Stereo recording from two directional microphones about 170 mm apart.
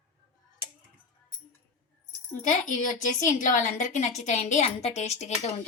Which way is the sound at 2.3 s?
50° left (ahead or behind).